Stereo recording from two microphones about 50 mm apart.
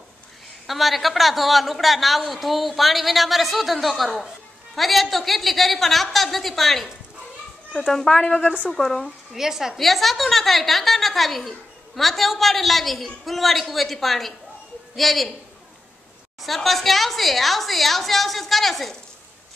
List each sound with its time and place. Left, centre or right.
0.7 s a woman's voice: centre
8.4 s a woman's voice: left
8.7 s speech: centre
9.4 s a woman's voice: centre
9.8 s a woman's voice: centre
16.4 s a woman's voice: centre